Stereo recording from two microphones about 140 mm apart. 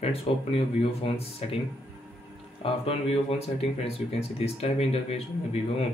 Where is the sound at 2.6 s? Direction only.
45° left (ahead or behind).